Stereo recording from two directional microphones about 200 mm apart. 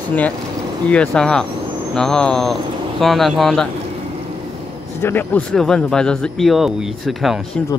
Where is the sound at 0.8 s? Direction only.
5° left (ahead or behind).